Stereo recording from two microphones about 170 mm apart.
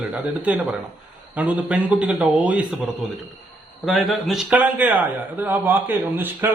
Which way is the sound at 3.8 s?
Centre (ahead or behind).